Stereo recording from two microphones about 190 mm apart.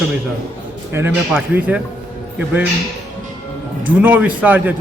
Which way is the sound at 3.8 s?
10° right (ahead or behind).